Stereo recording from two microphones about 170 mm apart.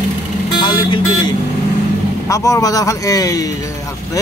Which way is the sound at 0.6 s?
25° left (ahead or behind).